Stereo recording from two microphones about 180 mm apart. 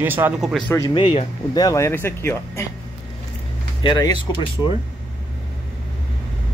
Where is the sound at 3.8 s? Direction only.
25° left (ahead or behind).